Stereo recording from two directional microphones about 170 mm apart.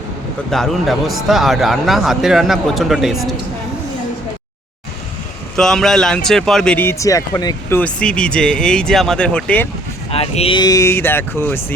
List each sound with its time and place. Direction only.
0.5 s a man's voice: centre (ahead or behind)
5.5 s a man's voice: 5° left (ahead or behind); by 7.8 s 20° left (ahead or behind)
7.8 s a man's voice: 5° left (ahead or behind)
10.1 s speech: 35° left (ahead or behind); by 11.6 s 15° left (ahead or behind)